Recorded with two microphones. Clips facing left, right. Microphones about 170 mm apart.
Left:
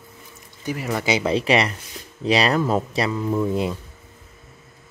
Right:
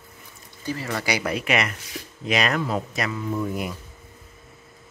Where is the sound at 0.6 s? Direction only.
15° left (ahead or behind).